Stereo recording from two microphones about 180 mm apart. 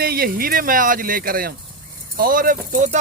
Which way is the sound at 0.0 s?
55° right (ahead or behind).